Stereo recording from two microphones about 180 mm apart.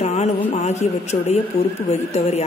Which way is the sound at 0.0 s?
40° left (ahead or behind).